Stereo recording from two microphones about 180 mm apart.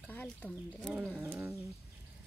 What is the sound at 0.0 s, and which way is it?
Speech, 10° left (ahead or behind).